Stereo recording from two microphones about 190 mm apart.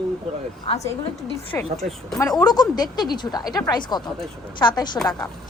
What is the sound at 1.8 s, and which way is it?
Speech, centre (ahead or behind).